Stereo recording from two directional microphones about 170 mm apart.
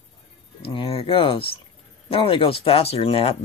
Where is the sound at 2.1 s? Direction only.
30° left (ahead or behind).